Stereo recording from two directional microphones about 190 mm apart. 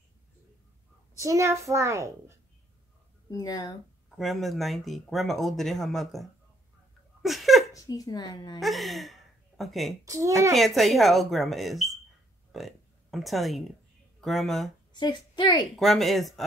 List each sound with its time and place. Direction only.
1.1 s a child's voice: 15° right (ahead or behind)
3.3 s a woman's voice: 20° left (ahead or behind)
4.2 s speech: centre (ahead or behind)
7.2 s laughter: centre (ahead or behind)
7.7 s a woman's voice: 20° left (ahead or behind)
8.5 s speech: centre (ahead or behind)
10.0 s a child's voice: 15° right (ahead or behind)
10.5 s speech: centre (ahead or behind)
14.9 s a woman's voice: 20° left (ahead or behind)
15.7 s speech: centre (ahead or behind)